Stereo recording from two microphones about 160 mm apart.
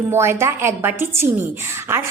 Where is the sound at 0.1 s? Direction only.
15° right (ahead or behind).